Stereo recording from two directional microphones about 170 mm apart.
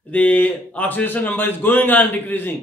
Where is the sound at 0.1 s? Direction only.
10° left (ahead or behind).